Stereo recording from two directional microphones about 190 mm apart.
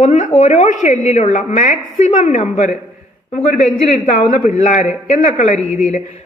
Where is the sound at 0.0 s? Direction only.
35° left (ahead or behind).